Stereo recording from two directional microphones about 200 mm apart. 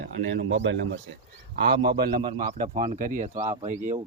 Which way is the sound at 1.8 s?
50° right (ahead or behind).